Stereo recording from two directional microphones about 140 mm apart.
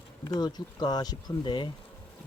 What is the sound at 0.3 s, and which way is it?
Speech, 30° left (ahead or behind).